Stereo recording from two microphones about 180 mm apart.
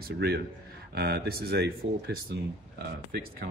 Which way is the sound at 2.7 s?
60° right (ahead or behind).